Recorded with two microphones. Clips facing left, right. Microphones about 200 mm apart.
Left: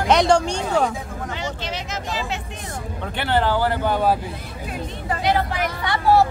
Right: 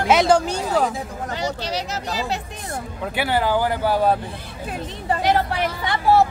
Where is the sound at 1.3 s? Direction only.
40° right (ahead or behind).